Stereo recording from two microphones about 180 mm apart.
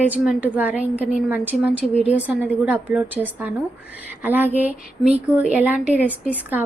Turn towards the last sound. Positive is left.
turn(degrees=-10)  # may be behind; listen again after turning